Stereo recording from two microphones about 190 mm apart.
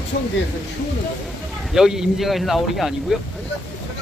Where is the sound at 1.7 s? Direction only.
Centre (ahead or behind).